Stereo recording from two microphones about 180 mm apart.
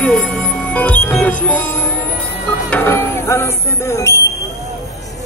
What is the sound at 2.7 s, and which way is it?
Music, 10° left (ahead or behind).